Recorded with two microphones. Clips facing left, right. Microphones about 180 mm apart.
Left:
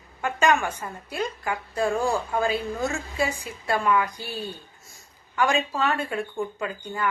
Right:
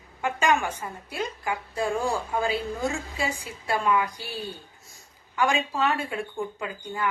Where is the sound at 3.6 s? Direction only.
15° right (ahead or behind).